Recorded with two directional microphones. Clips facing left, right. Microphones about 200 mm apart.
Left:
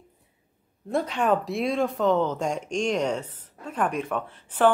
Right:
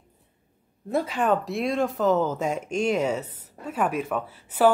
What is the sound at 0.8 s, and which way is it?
Speech, 5° right (ahead or behind).